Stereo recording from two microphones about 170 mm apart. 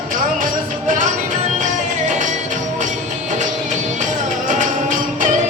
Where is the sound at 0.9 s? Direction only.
50° right (ahead or behind).